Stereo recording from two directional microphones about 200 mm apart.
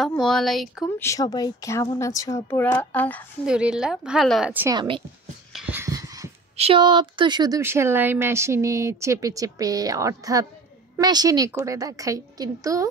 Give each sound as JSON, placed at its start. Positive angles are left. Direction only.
{"t": 0.0, "sound": "a woman's voice", "side_deg": 0}
{"t": 0.9, "sound": "speech", "side_deg": 15}
{"t": 3.4, "sound": "a woman's voice", "side_deg": -5}
{"t": 4.7, "sound": "speech", "side_deg": -25}
{"t": 5.5, "sound": "a sound", "side_deg": -5}
{"t": 6.5, "sound": "speech", "side_deg": -30}